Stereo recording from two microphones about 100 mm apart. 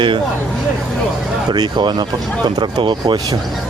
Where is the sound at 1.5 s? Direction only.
45° right (ahead or behind).